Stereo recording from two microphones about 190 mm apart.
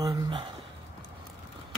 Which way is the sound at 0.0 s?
25° right (ahead or behind).